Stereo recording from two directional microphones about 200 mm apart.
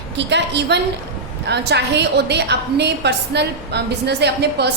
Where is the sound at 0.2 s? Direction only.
60° right (ahead or behind).